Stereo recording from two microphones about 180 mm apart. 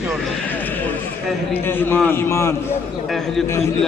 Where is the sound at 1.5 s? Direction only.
10° left (ahead or behind).